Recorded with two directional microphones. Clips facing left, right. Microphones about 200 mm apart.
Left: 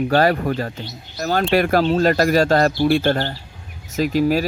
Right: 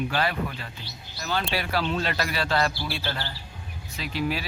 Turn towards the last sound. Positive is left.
turn(degrees=45)  # may be behind; listen again after turning